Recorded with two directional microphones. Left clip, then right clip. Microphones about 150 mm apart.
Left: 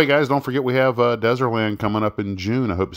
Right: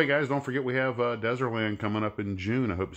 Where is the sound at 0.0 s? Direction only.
40° left (ahead or behind).